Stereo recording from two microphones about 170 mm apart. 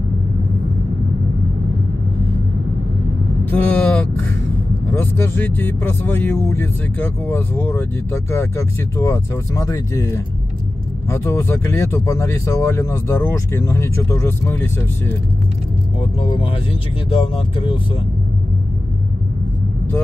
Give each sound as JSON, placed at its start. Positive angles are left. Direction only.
{"t": 3.4, "sound": "vehicle", "side_deg": 10}
{"t": 4.9, "sound": "speech", "side_deg": 10}
{"t": 16.0, "sound": "speech", "side_deg": 30}